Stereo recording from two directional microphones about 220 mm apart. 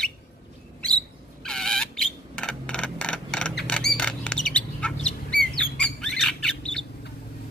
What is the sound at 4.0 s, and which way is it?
Bird, 5° left (ahead or behind).